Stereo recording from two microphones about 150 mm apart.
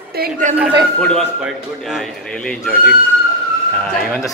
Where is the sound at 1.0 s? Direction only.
5° left (ahead or behind).